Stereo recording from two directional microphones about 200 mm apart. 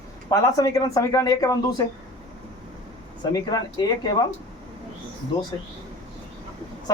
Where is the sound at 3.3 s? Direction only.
20° left (ahead or behind).